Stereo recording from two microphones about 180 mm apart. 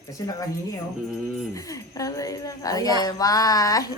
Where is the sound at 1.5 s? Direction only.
20° left (ahead or behind).